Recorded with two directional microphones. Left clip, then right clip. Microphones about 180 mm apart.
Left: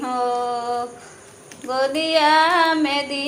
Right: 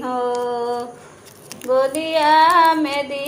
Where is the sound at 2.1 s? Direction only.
15° left (ahead or behind).